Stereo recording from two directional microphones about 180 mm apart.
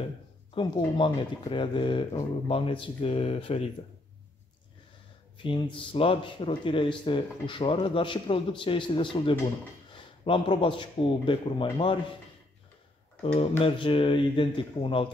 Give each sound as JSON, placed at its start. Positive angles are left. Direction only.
{"t": 0.6, "sound": "speech", "side_deg": 25}
{"t": 5.4, "sound": "speech", "side_deg": 30}
{"t": 13.2, "sound": "speech", "side_deg": 35}